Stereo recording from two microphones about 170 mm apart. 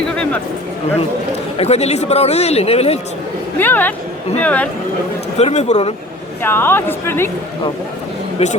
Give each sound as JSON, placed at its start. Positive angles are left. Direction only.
{"t": 1.5, "sound": "speech", "side_deg": 40}
{"t": 3.6, "sound": "a woman's voice", "side_deg": 10}
{"t": 5.4, "sound": "speech", "side_deg": 40}
{"t": 6.4, "sound": "a woman's voice", "side_deg": 10}
{"t": 8.4, "sound": "speech", "side_deg": 40}